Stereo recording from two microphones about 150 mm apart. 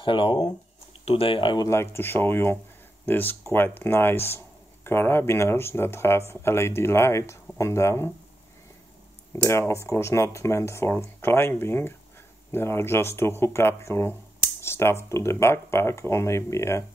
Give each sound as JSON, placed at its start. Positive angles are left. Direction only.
{"t": 0.0, "sound": "speech", "side_deg": 35}
{"t": 1.7, "sound": "speech", "side_deg": 15}
{"t": 9.3, "sound": "speech", "side_deg": 20}